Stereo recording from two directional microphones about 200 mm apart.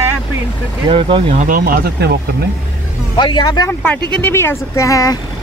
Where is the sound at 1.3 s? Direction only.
35° right (ahead or behind).